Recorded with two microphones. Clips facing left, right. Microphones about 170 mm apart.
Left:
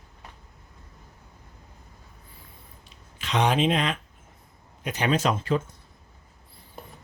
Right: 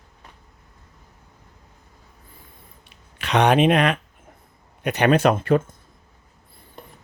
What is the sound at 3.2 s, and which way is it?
Speech, 65° right (ahead or behind).